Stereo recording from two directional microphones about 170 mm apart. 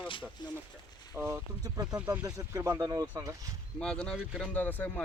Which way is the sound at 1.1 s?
15° right (ahead or behind).